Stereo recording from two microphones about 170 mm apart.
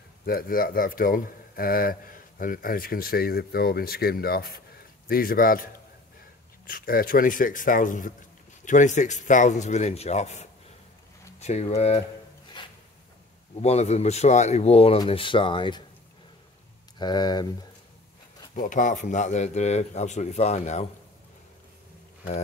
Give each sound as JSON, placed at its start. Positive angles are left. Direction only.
{"t": 0.2, "sound": "speech", "side_deg": 60}
{"t": 12.6, "sound": "a sound", "side_deg": 30}
{"t": 13.6, "sound": "speech", "side_deg": 40}
{"t": 17.0, "sound": "speech", "side_deg": 25}
{"t": 18.5, "sound": "speech", "side_deg": 50}